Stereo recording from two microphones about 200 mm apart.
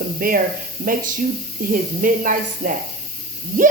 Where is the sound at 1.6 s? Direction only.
45° right (ahead or behind).